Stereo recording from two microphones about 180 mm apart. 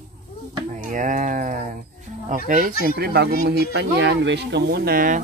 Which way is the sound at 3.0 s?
60° right (ahead or behind).